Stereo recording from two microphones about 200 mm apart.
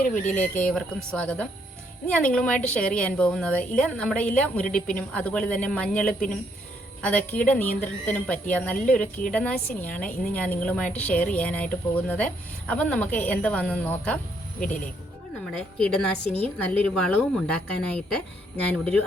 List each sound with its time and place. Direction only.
0.1 s a woman's voice: 5° left (ahead or behind)
14.6 s speech: 40° left (ahead or behind)
15.8 s a woman's voice: 5° left (ahead or behind)